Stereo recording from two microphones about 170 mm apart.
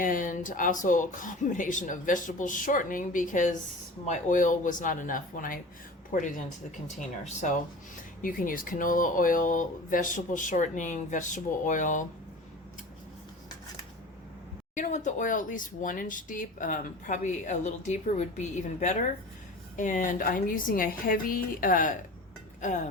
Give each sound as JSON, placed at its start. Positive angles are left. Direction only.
{"t": 0.0, "sound": "speech", "side_deg": 50}
{"t": 14.8, "sound": "speech", "side_deg": 45}